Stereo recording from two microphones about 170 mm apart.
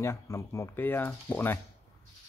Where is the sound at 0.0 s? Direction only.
15° left (ahead or behind).